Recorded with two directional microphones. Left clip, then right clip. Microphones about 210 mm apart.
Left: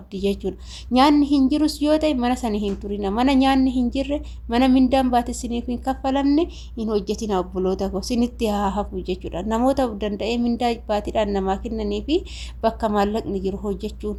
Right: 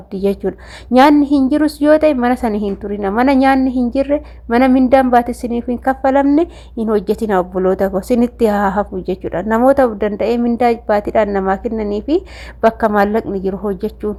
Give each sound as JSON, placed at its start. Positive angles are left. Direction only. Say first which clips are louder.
{"t": 0.1, "sound": "a woman's voice", "louder": "right 7 dB", "side_deg": -30}